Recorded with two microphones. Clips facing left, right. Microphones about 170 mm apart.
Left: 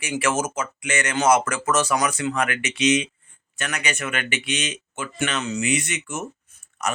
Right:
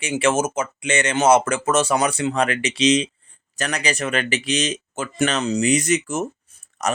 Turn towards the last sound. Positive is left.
turn(degrees=-40)  # may be behind; listen again after turning